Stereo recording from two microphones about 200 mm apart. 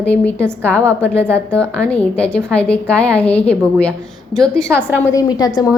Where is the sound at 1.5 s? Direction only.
5° left (ahead or behind).